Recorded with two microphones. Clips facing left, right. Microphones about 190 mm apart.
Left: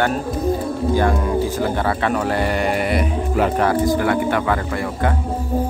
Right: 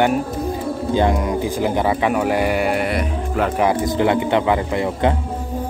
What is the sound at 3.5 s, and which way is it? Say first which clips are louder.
Speech: even; 20° right (ahead or behind).